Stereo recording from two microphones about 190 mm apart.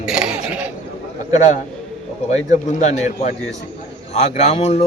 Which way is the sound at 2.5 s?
40° left (ahead or behind).